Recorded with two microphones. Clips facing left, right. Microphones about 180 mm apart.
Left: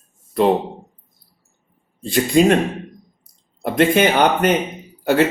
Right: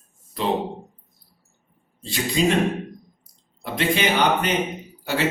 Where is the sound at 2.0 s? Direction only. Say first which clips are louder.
Left 7 dB; 50° left (ahead or behind).